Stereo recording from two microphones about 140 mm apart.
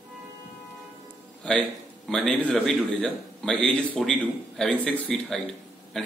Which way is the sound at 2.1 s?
5° left (ahead or behind).